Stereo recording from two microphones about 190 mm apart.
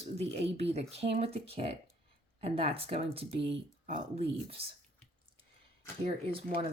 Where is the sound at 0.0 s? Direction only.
35° right (ahead or behind).